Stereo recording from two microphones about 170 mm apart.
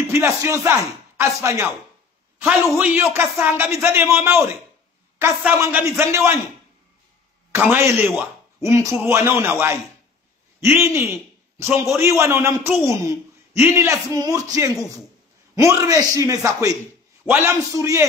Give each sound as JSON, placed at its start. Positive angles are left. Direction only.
{"t": 0.1, "sound": "a man's voice", "side_deg": -15}
{"t": 7.5, "sound": "a man's voice", "side_deg": -15}